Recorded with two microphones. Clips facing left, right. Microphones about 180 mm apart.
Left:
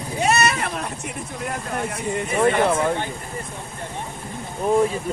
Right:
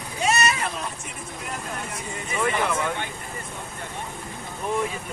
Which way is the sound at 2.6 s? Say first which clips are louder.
Left 6 dB; 35° left (ahead or behind).